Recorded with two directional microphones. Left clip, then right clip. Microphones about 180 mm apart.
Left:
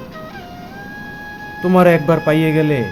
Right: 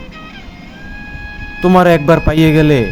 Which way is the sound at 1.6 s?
40° right (ahead or behind).